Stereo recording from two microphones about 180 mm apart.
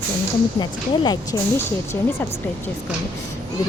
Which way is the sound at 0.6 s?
25° left (ahead or behind).